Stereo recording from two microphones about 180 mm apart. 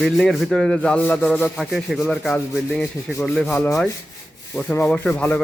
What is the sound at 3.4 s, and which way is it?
Speech, 15° left (ahead or behind).